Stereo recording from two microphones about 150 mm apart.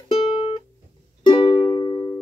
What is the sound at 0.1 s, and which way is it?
Music, 35° left (ahead or behind).